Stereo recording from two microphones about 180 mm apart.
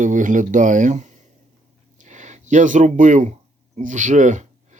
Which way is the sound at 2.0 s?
40° right (ahead or behind).